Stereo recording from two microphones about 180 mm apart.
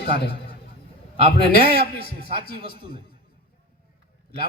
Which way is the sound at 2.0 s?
55° left (ahead or behind).